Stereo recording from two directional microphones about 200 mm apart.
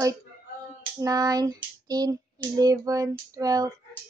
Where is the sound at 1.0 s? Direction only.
20° right (ahead or behind).